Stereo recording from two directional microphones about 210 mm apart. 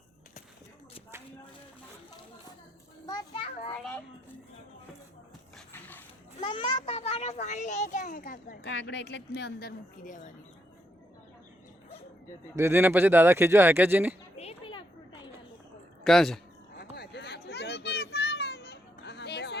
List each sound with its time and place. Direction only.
3.1 s children playing: 20° left (ahead or behind)
3.7 s a child's voice: 5° left (ahead or behind)
6.4 s a child's voice: 20° left (ahead or behind); by 8.5 s 40° left (ahead or behind)
8.6 s a woman's voice: 55° left (ahead or behind); by 10.3 s 40° left (ahead or behind)
12.5 s speech: 10° right (ahead or behind)
14.3 s a sound: 25° left (ahead or behind)
16.0 s speech: centre (ahead or behind)
16.7 s children playing: 50° left (ahead or behind)